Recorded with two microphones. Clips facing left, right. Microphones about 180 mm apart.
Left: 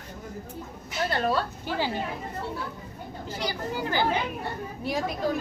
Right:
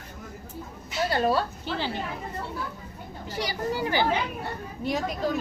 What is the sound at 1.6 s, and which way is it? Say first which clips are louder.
Speech: left 2 dB; 10° left (ahead or behind).